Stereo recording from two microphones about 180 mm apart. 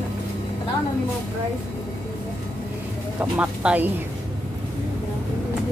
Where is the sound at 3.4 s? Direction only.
5° right (ahead or behind).